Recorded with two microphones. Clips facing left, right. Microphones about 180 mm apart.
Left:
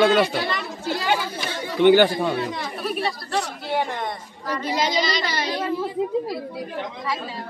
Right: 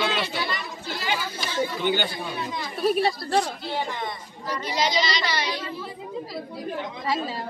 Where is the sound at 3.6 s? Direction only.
60° left (ahead or behind).